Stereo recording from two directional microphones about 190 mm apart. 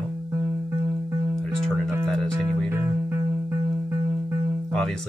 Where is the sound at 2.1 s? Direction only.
Centre (ahead or behind).